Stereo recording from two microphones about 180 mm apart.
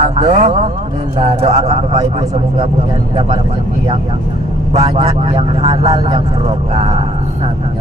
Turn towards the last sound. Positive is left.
turn(degrees=-35)  # may be behind; listen again after turning